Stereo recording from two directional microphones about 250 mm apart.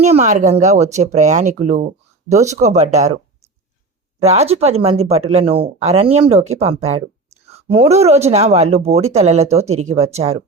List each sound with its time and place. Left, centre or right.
0.0 s speech: right
4.2 s speech: right